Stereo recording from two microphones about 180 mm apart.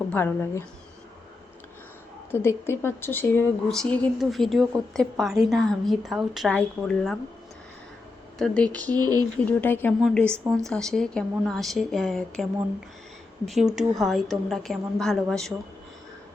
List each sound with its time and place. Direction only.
0.1 s speech: 10° left (ahead or behind)
2.3 s speech: 15° left (ahead or behind)
8.4 s speech: 5° left (ahead or behind)
9.0 s speech: 20° right (ahead or behind)
9.5 s speech: 10° left (ahead or behind)
10.2 s speech: 15° right (ahead or behind)
10.5 s speech: 5° left (ahead or behind)